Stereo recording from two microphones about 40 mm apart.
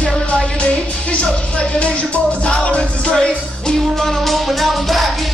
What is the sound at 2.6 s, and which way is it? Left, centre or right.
Music, left.